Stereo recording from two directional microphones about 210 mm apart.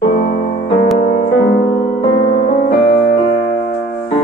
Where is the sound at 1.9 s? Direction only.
30° left (ahead or behind).